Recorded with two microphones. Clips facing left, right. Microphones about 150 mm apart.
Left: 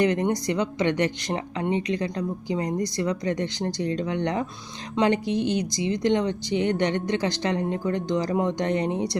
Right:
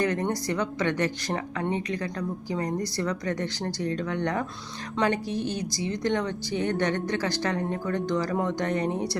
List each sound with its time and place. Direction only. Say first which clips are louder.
0.0 s speech: left 4 dB; 15° left (ahead or behind)